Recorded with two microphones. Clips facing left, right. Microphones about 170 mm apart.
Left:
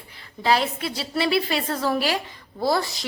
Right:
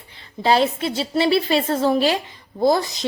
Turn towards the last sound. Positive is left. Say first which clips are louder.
# right 5 dB
turn(degrees=-20)  # may be behind; listen again after turning